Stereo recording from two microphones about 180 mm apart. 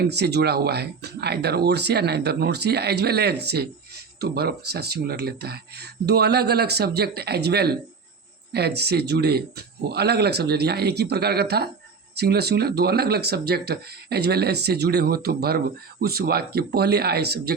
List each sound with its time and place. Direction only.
0.0 s speech: 65° right (ahead or behind)